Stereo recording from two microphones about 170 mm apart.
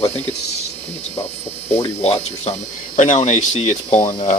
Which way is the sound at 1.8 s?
40° left (ahead or behind).